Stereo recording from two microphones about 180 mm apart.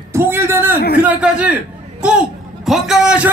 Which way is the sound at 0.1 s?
15° right (ahead or behind).